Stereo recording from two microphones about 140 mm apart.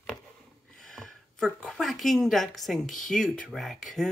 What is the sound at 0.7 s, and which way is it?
A woman's voice, centre (ahead or behind).